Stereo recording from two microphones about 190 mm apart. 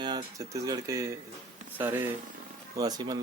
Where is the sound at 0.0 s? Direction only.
25° right (ahead or behind).